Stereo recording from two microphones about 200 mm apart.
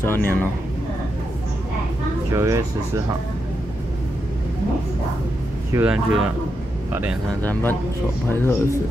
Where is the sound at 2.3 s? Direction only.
15° right (ahead or behind).